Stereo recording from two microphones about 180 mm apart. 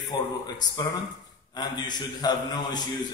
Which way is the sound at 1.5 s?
25° left (ahead or behind).